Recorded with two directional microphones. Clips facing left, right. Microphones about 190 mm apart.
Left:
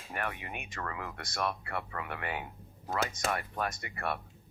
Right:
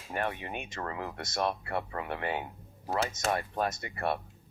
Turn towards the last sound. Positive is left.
turn(degrees=-30)  # may be behind; listen again after turning